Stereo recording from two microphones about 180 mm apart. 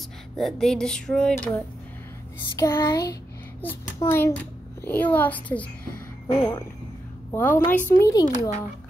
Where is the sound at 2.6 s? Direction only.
20° left (ahead or behind).